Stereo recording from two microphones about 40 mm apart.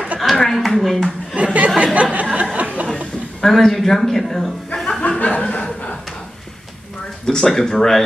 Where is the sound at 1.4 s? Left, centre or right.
Right.